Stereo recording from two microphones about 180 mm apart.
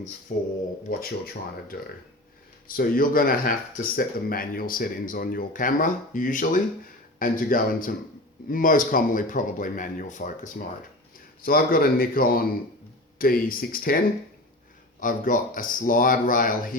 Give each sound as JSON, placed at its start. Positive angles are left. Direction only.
{"t": 0.3, "sound": "speech", "side_deg": 50}
{"t": 15.0, "sound": "speech", "side_deg": 50}